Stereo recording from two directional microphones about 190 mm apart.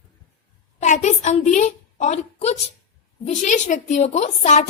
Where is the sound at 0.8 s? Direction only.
40° left (ahead or behind).